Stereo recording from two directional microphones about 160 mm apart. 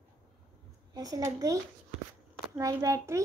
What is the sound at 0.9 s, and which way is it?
Speech, 25° right (ahead or behind).